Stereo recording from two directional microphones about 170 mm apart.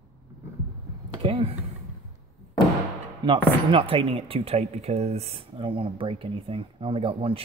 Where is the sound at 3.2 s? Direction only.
30° right (ahead or behind).